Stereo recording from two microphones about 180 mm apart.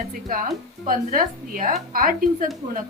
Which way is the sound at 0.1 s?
45° right (ahead or behind).